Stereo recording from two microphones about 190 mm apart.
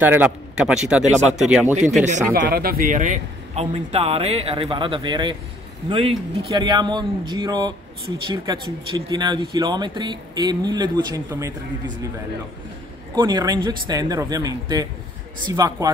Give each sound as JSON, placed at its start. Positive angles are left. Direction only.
{"t": 0.0, "sound": "speech", "side_deg": -10}
{"t": 2.3, "sound": "a man's voice", "side_deg": -55}
{"t": 13.1, "sound": "speech", "side_deg": -20}